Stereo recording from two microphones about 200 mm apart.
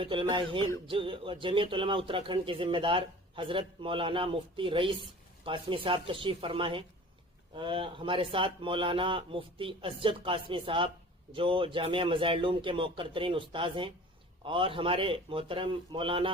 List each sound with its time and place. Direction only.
0.0 s speech: 25° right (ahead or behind)